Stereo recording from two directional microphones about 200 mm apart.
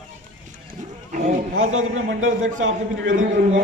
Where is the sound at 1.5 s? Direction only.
90° right.